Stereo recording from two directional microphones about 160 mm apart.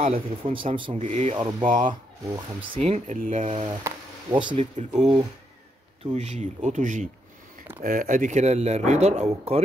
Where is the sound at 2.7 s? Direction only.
40° right (ahead or behind).